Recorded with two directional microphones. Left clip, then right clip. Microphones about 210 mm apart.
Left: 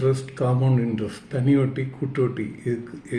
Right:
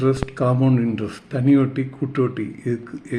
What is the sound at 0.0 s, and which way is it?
A man's voice, 35° right (ahead or behind).